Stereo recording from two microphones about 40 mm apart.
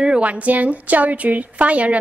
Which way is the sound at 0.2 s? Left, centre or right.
Right.